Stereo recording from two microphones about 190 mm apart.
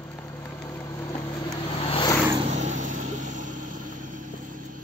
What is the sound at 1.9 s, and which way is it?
Vehicle, 25° left (ahead or behind).